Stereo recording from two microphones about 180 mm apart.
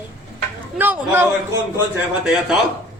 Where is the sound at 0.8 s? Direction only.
10° right (ahead or behind).